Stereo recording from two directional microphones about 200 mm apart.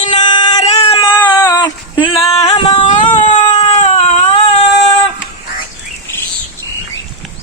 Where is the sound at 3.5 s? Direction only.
25° left (ahead or behind).